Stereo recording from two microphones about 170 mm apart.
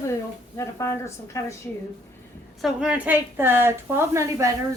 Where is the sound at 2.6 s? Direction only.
5° right (ahead or behind).